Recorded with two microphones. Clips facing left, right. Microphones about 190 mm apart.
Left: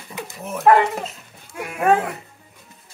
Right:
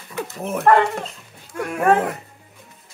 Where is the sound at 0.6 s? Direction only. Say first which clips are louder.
Left 1 dB; 5° left (ahead or behind).